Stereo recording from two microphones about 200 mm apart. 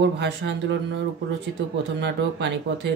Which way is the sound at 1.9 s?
60° right (ahead or behind).